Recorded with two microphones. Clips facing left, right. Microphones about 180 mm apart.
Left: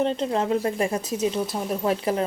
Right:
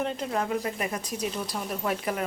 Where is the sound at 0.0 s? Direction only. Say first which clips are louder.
Left 6 dB; 30° left (ahead or behind).